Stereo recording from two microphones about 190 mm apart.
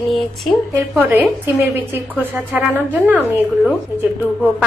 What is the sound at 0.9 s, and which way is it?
A woman's voice, 10° right (ahead or behind).